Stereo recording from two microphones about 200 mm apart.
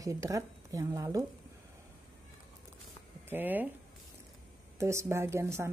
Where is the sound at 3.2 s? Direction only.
10° right (ahead or behind).